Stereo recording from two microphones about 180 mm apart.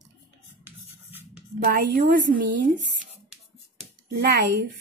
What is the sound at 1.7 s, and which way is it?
Speech, 55° right (ahead or behind).